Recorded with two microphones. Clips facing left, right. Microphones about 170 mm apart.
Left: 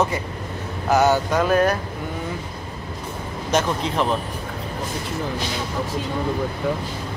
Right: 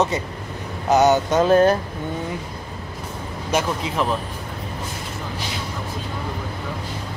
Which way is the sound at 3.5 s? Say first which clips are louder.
Left 1 dB; 5° right (ahead or behind).